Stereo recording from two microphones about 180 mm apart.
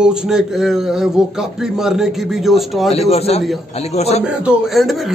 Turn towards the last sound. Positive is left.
turn(degrees=0)  # may be behind; listen again after turning